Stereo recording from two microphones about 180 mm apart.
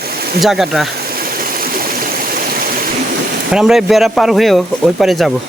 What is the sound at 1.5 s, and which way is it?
Stream, 55° right (ahead or behind).